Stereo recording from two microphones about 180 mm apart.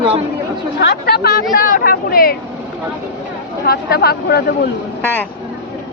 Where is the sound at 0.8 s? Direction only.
65° left (ahead or behind).